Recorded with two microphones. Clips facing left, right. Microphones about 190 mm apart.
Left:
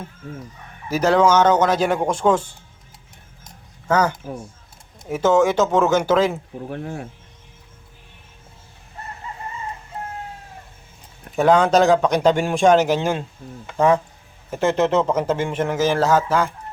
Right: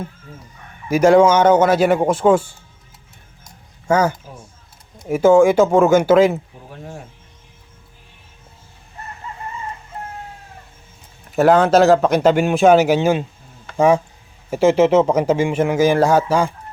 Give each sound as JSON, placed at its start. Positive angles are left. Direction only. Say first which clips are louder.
{"t": 0.9, "sound": "a man's voice", "louder": "right 5 dB", "side_deg": -10}
{"t": 3.8, "sound": "a man's voice", "louder": "right 2 dB", "side_deg": -10}
{"t": 6.7, "sound": "speech", "louder": "left 6 dB", "side_deg": 60}
{"t": 11.3, "sound": "a man's voice", "louder": "right 3 dB", "side_deg": -5}